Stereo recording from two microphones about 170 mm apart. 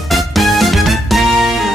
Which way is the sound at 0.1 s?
Centre (ahead or behind).